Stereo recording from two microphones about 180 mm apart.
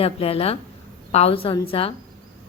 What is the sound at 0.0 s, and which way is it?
A woman's voice, 35° left (ahead or behind).